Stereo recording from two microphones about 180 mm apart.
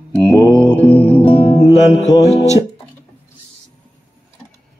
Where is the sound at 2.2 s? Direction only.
35° left (ahead or behind).